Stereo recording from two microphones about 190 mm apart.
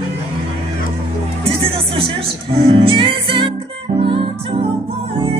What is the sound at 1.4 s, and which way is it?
Music, 30° right (ahead or behind).